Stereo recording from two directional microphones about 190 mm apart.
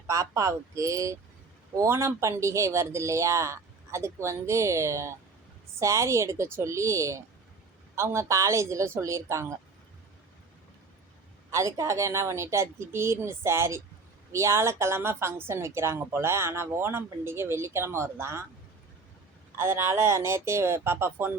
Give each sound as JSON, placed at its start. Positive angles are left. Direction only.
{"t": 0.1, "sound": "speech", "side_deg": -15}
{"t": 11.5, "sound": "speech", "side_deg": -15}
{"t": 19.5, "sound": "speech", "side_deg": -15}